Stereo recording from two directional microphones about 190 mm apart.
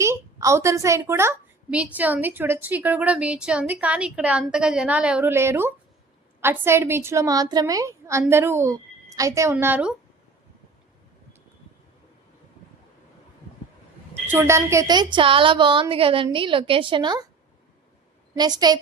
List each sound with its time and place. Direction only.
0.0 s a woman's voice: 15° right (ahead or behind)
14.1 s a woman's voice: 10° right (ahead or behind)
18.3 s a woman's voice: 20° right (ahead or behind)